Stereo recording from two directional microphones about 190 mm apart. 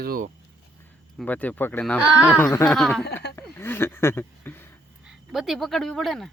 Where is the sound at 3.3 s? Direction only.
10° left (ahead or behind).